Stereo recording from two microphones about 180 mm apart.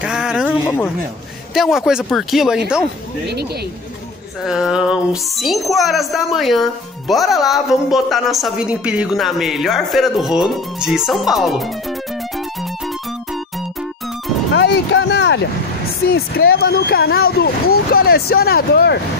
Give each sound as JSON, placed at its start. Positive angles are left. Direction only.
{"t": 0.0, "sound": "a sound", "side_deg": -5}
{"t": 0.7, "sound": "speech", "side_deg": 15}
{"t": 1.5, "sound": "speech", "side_deg": 0}
{"t": 4.5, "sound": "speech", "side_deg": -5}
{"t": 14.5, "sound": "a sound", "side_deg": 80}
{"t": 16.1, "sound": "speech", "side_deg": 60}